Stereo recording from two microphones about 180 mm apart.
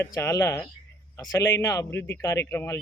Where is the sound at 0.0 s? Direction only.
15° left (ahead or behind).